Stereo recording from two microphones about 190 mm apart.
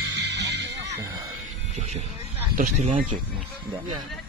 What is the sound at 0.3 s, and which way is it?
Music, 65° right (ahead or behind).